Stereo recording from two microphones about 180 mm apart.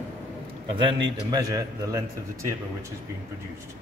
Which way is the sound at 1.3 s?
20° right (ahead or behind).